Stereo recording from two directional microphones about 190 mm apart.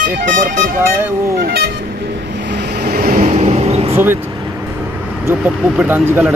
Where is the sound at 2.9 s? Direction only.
45° right (ahead or behind).